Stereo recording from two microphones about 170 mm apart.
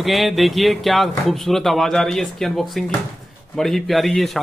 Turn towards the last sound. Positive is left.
turn(degrees=0)  # may be behind; listen again after turning